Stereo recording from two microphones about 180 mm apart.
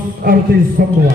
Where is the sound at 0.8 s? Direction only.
55° right (ahead or behind).